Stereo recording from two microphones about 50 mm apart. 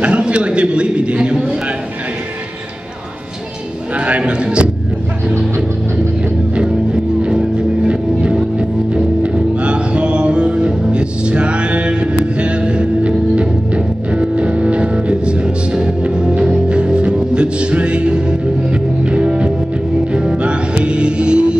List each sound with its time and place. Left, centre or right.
0.0 s a man's voice: right
4.0 s speech: right
7.2 s music: centre